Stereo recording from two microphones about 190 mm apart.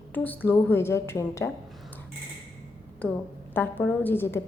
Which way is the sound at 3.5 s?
10° left (ahead or behind).